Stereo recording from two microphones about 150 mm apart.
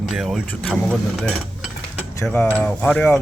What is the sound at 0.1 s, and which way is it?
Speech, centre (ahead or behind).